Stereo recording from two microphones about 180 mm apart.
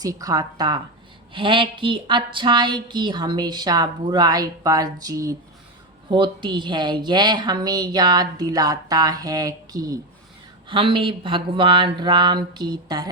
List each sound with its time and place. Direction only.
0.0 s a woman's voice: 20° right (ahead or behind)